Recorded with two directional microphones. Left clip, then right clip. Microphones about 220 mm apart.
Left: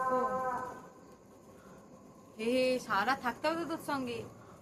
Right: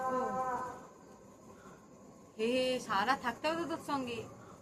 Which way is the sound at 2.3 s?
20° left (ahead or behind).